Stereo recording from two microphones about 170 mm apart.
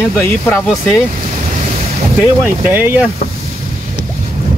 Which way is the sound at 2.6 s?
10° right (ahead or behind).